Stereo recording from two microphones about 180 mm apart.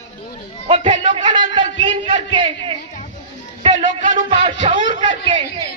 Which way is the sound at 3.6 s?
35° right (ahead or behind).